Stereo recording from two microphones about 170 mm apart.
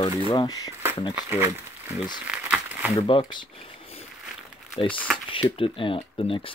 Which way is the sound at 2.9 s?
30° left (ahead or behind).